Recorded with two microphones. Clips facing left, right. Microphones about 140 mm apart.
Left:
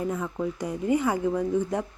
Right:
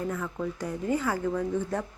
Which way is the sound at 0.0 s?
20° left (ahead or behind).